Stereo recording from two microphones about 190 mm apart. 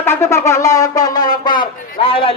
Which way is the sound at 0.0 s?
15° left (ahead or behind).